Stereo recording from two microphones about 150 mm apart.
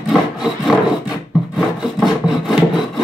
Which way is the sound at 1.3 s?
Centre (ahead or behind).